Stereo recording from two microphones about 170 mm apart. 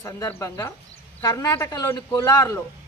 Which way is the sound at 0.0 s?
15° left (ahead or behind).